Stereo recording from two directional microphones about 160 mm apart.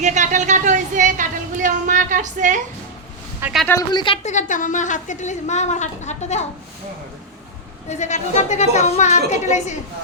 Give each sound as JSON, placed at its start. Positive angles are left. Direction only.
{"t": 0.0, "sound": "speech", "side_deg": -50}
{"t": 3.7, "sound": "speech", "side_deg": 20}
{"t": 4.0, "sound": "a woman's voice", "side_deg": 35}
{"t": 4.3, "sound": "a woman's voice", "side_deg": 50}
{"t": 7.9, "sound": "a woman's voice", "side_deg": 45}